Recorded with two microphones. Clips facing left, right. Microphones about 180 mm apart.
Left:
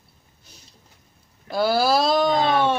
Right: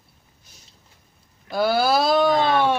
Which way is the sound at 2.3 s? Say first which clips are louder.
Right 1 dB; 25° left (ahead or behind).